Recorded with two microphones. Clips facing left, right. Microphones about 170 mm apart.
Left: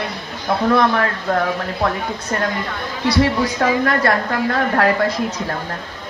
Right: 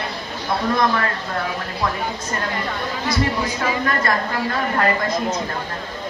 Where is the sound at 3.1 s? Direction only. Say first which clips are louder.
Left 6 dB; 70° left (ahead or behind).